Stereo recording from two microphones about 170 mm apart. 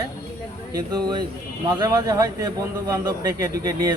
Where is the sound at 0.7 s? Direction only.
25° right (ahead or behind).